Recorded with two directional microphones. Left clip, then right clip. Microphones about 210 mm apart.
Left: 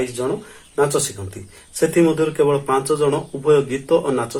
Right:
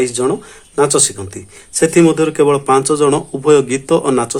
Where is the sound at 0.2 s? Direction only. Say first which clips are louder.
Right 6 dB; 50° right (ahead or behind).